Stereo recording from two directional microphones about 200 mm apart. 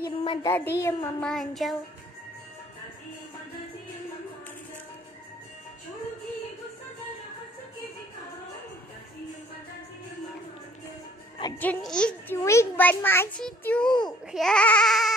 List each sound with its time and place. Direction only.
0.0 s child singing: 25° left (ahead or behind)
0.5 s a child's voice: 10° left (ahead or behind)
1.3 s speech: centre (ahead or behind)
11.6 s a child's voice: 5° left (ahead or behind)